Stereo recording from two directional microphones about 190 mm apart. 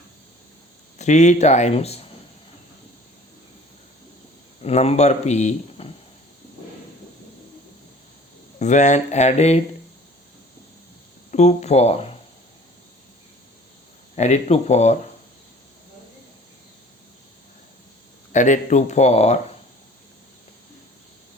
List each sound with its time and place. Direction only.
0.9 s speech: 40° left (ahead or behind)
4.6 s speech: 35° left (ahead or behind)
8.5 s speech: 40° left (ahead or behind)
11.3 s speech: 35° left (ahead or behind)
14.2 s speech: 35° left (ahead or behind)
18.3 s speech: 40° left (ahead or behind)